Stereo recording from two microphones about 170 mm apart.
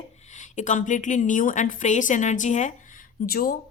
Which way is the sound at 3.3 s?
60° left (ahead or behind).